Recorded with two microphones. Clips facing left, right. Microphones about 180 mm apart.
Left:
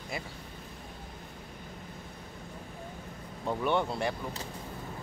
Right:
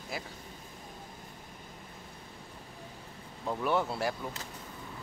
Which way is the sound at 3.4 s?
5° right (ahead or behind).